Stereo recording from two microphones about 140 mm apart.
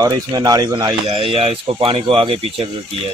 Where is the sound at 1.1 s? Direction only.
40° right (ahead or behind).